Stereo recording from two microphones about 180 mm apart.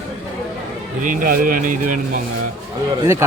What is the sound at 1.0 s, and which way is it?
Speech, 50° right (ahead or behind).